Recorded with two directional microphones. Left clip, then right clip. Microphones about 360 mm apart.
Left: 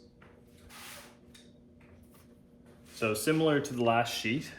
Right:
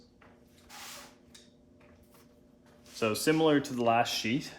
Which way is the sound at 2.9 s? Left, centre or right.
Right.